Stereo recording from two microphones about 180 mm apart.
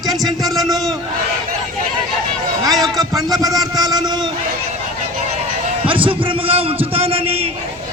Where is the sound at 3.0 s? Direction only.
20° right (ahead or behind).